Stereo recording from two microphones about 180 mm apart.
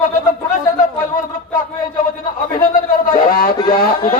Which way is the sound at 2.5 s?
50° left (ahead or behind).